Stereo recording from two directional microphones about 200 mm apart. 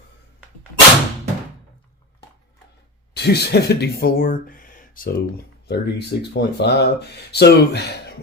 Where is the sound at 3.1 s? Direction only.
55° left (ahead or behind).